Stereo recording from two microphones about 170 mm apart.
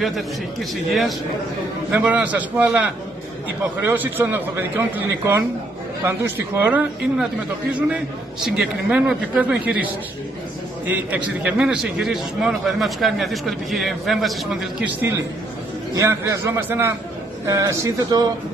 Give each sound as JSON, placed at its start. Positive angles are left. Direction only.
{"t": 0.0, "sound": "a man's voice", "side_deg": 0}
{"t": 8.5, "sound": "a man's voice", "side_deg": -5}
{"t": 11.1, "sound": "a man's voice", "side_deg": -10}
{"t": 15.9, "sound": "a man's voice", "side_deg": -20}